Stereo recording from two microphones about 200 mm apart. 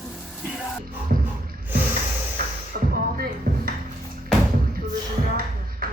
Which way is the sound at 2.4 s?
50° right (ahead or behind).